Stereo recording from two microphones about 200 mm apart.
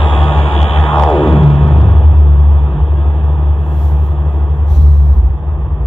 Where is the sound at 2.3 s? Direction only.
25° left (ahead or behind).